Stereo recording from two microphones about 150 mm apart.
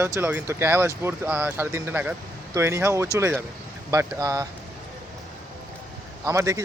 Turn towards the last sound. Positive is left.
turn(degrees=-20)  # may be behind; listen again after turning